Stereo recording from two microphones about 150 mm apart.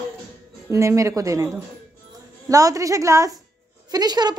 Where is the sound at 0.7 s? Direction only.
20° right (ahead or behind).